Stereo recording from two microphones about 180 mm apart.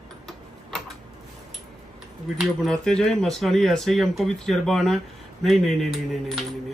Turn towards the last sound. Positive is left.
turn(degrees=0)  # may be behind; listen again after turning